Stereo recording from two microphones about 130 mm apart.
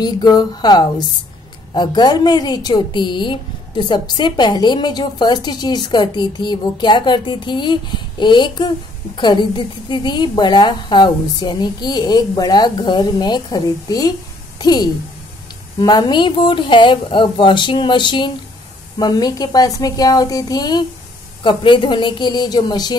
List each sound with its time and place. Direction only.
0.0 s a woman's voice: 35° left (ahead or behind)